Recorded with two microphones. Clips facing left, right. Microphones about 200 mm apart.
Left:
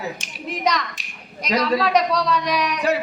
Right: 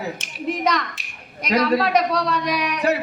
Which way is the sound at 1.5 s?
60° right (ahead or behind).